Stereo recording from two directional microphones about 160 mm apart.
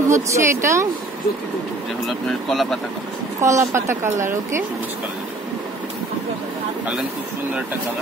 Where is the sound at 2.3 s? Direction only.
Centre (ahead or behind).